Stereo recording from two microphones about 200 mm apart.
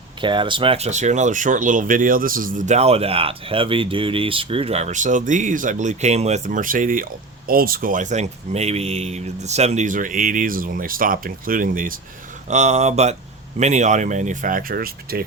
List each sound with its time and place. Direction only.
0.2 s speech: 25° right (ahead or behind); by 15.2 s 45° right (ahead or behind)